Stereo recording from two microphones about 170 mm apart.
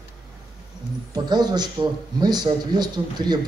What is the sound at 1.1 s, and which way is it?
A man's voice, 25° right (ahead or behind).